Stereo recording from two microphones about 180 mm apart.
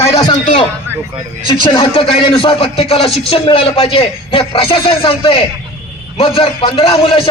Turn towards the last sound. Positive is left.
turn(degrees=30)  # may be behind; listen again after turning